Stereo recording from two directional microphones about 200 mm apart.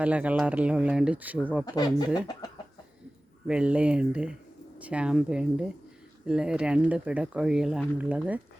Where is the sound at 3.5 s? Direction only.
5° right (ahead or behind).